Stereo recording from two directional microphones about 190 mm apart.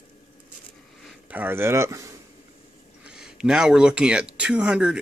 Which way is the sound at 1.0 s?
10° right (ahead or behind).